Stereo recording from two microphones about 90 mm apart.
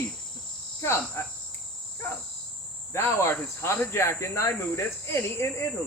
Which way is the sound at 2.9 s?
30° left (ahead or behind).